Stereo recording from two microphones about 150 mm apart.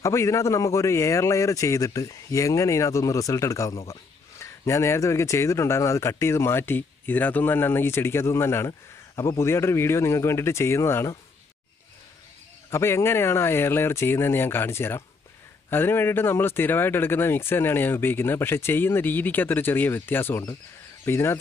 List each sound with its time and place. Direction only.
0.0 s a man's voice: 20° left (ahead or behind)
12.7 s speech: 15° left (ahead or behind)